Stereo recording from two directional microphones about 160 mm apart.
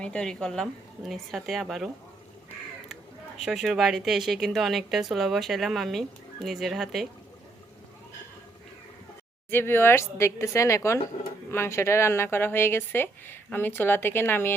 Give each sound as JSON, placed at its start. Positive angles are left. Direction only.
{"t": 0.0, "sound": "a woman's voice", "side_deg": 5}
{"t": 3.4, "sound": "a woman's voice", "side_deg": 0}
{"t": 9.5, "sound": "speech", "side_deg": 15}